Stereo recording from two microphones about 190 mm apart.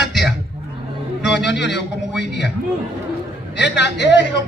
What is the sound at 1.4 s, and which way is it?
A man's voice, 65° left (ahead or behind).